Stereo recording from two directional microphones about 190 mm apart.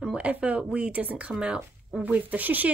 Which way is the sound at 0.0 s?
5° right (ahead or behind).